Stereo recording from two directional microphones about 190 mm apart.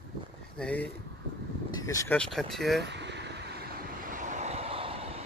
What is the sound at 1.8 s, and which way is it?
Speech, 15° left (ahead or behind).